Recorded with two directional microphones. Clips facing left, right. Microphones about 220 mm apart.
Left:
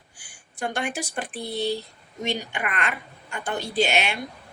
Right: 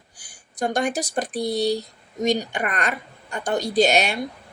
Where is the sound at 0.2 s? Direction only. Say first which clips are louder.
Right 5 dB; 35° right (ahead or behind).